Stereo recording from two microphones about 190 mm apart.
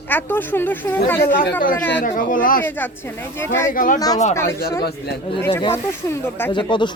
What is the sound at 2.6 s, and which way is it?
Speech, 10° left (ahead or behind).